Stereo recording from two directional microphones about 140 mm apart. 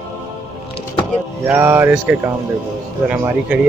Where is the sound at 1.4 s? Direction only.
15° right (ahead or behind).